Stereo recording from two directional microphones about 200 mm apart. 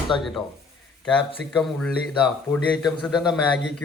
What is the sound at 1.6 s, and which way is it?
A man's voice, centre (ahead or behind).